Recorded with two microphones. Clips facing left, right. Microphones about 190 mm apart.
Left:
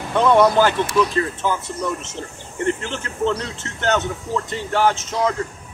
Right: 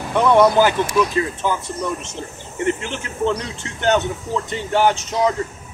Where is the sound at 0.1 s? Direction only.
10° right (ahead or behind).